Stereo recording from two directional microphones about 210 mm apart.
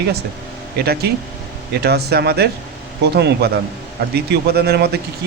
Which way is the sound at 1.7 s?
50° right (ahead or behind).